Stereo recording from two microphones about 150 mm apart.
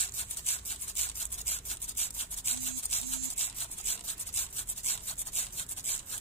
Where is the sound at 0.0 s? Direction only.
45° left (ahead or behind).